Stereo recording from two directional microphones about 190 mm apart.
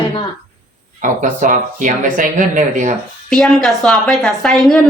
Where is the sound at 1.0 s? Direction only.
40° right (ahead or behind).